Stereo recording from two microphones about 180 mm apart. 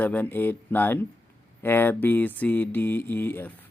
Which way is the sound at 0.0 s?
10° left (ahead or behind).